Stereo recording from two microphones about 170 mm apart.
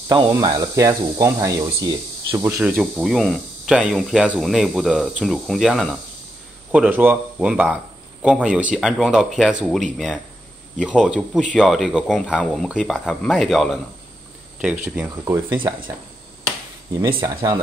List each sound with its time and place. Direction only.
0.1 s speech: 25° right (ahead or behind)
17.2 s speech: 20° right (ahead or behind)